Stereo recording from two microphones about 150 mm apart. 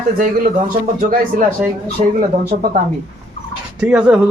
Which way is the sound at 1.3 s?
70° right (ahead or behind).